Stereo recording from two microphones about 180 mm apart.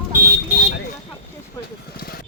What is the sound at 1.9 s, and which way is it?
Vehicle, 55° left (ahead or behind).